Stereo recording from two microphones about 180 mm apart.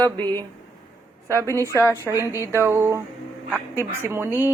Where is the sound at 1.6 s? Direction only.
15° right (ahead or behind).